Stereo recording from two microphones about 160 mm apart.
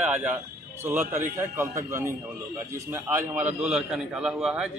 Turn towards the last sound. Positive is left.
turn(degrees=-5)  # may be behind; listen again after turning